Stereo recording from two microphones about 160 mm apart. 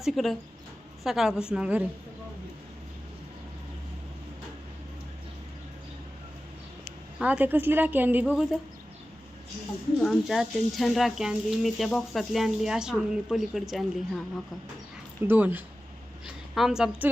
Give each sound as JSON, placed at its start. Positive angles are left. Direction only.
{"t": 0.0, "sound": "speech", "side_deg": 0}
{"t": 7.2, "sound": "a woman's voice", "side_deg": -10}
{"t": 10.0, "sound": "speech", "side_deg": 0}
{"t": 15.3, "sound": "a woman's voice", "side_deg": -10}